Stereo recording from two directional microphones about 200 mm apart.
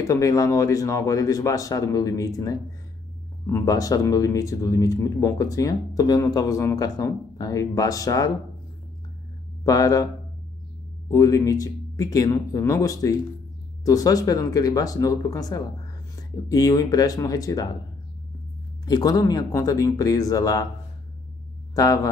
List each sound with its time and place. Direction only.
0.0 s speech: 15° left (ahead or behind)
9.7 s speech: 15° left (ahead or behind)
11.1 s speech: 15° left (ahead or behind)
18.9 s speech: 20° left (ahead or behind)
21.7 s speech: 15° left (ahead or behind)